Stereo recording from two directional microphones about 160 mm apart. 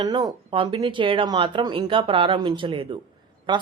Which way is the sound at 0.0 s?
25° right (ahead or behind).